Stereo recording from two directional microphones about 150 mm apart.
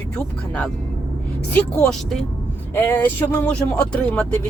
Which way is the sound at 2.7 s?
15° left (ahead or behind).